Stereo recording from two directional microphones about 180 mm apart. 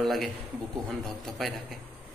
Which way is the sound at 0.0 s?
Centre (ahead or behind).